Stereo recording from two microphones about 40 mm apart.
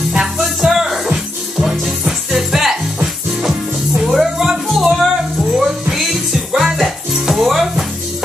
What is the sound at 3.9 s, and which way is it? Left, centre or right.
Music, centre.